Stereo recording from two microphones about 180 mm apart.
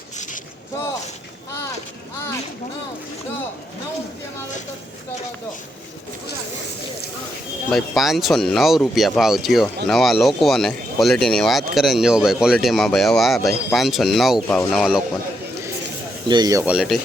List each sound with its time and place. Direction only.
7.7 s speech: centre (ahead or behind)
16.3 s speech: 20° right (ahead or behind)
16.6 s speech: centre (ahead or behind)